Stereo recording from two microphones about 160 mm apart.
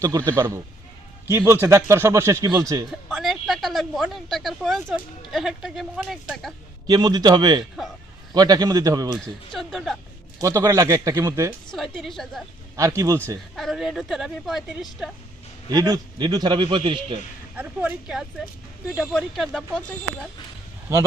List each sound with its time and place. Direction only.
0.3 s a man's voice: 20° right (ahead or behind)
2.9 s speech: centre (ahead or behind)
6.8 s a man's voice: 25° right (ahead or behind)
9.5 s speech: centre (ahead or behind)
10.4 s a man's voice: 20° right (ahead or behind)
11.7 s speech: centre (ahead or behind)
12.7 s a man's voice: 20° right (ahead or behind)
13.6 s speech: centre (ahead or behind)
15.7 s a man's voice: 25° right (ahead or behind)
17.6 s speech: 10° right (ahead or behind)